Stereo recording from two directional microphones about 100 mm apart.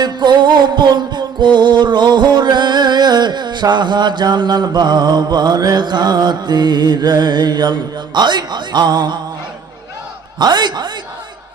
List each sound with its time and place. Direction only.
0.0 s music: 50° right (ahead or behind)
10.3 s a man's voice: 45° right (ahead or behind)